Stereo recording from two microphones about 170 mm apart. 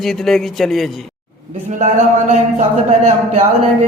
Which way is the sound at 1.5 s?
45° right (ahead or behind).